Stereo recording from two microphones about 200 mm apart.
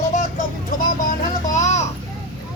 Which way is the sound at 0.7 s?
40° left (ahead or behind).